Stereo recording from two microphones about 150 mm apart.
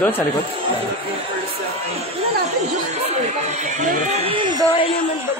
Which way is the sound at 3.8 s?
55° right (ahead or behind).